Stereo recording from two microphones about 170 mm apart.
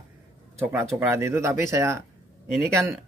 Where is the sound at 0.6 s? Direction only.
10° right (ahead or behind).